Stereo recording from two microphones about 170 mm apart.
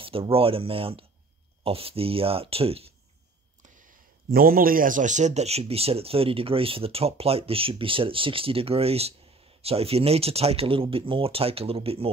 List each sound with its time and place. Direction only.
0.0 s speech: 35° right (ahead or behind)
4.3 s speech: 60° right (ahead or behind); by 12.1 s 35° right (ahead or behind)